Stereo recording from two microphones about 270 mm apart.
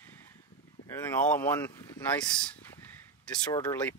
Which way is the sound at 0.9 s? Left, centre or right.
Centre.